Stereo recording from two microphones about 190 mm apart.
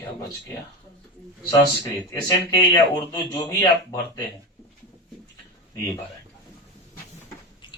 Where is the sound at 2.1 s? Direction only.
20° left (ahead or behind).